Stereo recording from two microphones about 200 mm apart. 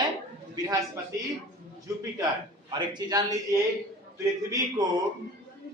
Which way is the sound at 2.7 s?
20° right (ahead or behind).